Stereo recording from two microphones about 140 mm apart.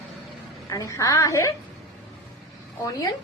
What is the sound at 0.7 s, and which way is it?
Speech, 25° left (ahead or behind).